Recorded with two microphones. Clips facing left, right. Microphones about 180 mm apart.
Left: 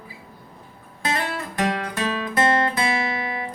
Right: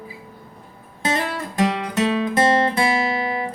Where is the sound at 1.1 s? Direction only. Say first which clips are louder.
Right 3 dB; 20° right (ahead or behind).